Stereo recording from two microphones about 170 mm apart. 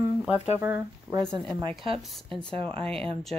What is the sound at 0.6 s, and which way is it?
Speech, 10° right (ahead or behind).